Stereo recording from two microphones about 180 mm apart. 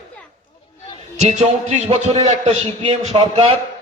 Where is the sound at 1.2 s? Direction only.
40° right (ahead or behind).